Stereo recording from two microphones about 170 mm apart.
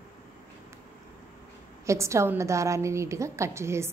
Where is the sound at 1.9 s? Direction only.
15° right (ahead or behind).